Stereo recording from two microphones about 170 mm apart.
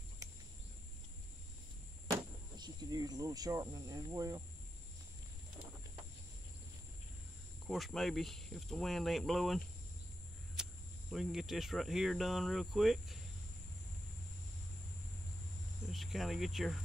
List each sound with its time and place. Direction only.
2.0 s speech: 25° right (ahead or behind)
7.6 s speech: centre (ahead or behind)
15.9 s speech: centre (ahead or behind)